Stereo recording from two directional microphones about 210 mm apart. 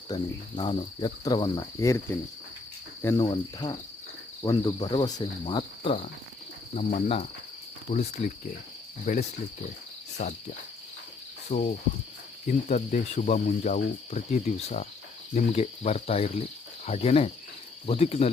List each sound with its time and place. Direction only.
0.1 s cricket: 20° left (ahead or behind)
11.5 s cricket: 35° left (ahead or behind)